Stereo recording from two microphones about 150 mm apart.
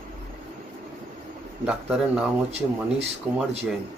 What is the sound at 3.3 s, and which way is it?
Speech, 10° right (ahead or behind).